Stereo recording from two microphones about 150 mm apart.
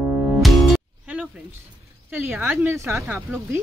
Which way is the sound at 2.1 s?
15° right (ahead or behind).